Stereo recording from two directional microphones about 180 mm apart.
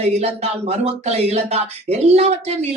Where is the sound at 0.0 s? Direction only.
35° right (ahead or behind).